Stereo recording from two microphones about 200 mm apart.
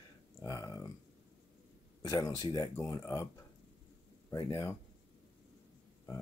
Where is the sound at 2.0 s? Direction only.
20° left (ahead or behind).